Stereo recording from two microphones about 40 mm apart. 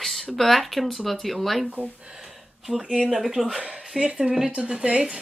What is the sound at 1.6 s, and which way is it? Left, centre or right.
Speech, right.